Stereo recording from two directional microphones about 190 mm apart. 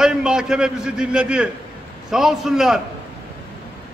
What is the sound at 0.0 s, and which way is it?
A man's voice, 5° right (ahead or behind).